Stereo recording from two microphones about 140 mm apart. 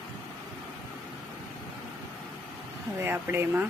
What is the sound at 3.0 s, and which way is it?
Speech, 15° right (ahead or behind).